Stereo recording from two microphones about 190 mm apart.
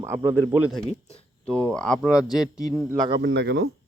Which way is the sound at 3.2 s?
65° right (ahead or behind).